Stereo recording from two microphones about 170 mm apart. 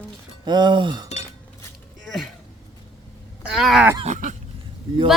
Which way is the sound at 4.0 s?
45° right (ahead or behind).